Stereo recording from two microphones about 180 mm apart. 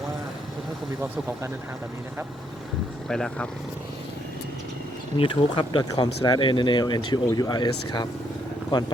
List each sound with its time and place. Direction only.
3.1 s speech: 5° left (ahead or behind)
5.1 s speech: 30° left (ahead or behind)